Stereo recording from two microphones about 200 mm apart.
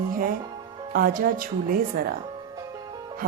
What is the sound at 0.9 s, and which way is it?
Speech, 45° right (ahead or behind).